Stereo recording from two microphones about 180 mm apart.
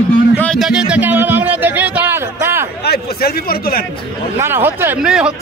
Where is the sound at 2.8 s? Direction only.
60° left (ahead or behind).